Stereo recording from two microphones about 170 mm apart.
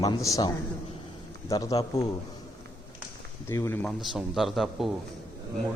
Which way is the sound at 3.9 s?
Centre (ahead or behind).